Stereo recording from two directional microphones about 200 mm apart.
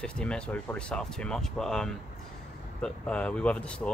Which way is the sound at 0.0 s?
5° left (ahead or behind).